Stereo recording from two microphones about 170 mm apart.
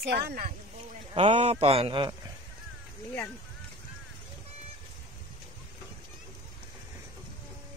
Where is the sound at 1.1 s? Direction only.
35° right (ahead or behind).